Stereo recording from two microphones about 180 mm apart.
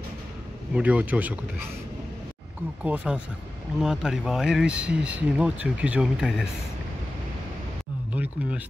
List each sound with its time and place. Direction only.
0.7 s speech: 10° right (ahead or behind)
2.8 s speech: 5° right (ahead or behind)
8.1 s speech: 10° right (ahead or behind)